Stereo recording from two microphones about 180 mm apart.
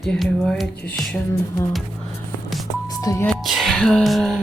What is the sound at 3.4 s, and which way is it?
Music, centre (ahead or behind).